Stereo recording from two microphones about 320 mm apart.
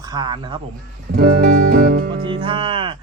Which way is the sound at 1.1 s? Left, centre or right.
Right.